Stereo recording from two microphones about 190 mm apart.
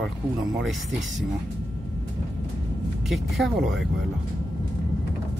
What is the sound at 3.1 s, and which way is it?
Speech, centre (ahead or behind).